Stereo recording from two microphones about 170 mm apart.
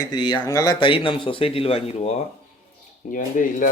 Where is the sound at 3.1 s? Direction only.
50° left (ahead or behind).